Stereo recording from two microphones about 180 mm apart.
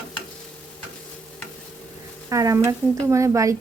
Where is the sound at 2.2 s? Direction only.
20° right (ahead or behind).